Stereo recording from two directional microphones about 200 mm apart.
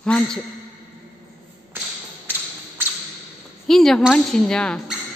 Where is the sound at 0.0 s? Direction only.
5° left (ahead or behind).